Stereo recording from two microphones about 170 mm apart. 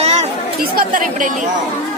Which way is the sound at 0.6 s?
55° right (ahead or behind).